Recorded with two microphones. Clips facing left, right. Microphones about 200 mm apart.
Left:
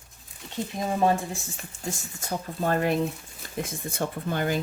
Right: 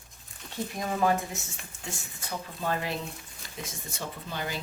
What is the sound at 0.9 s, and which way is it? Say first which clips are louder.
Speech: left 3 dB; 30° left (ahead or behind).